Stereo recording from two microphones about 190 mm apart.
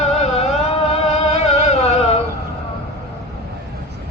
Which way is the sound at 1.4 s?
35° left (ahead or behind).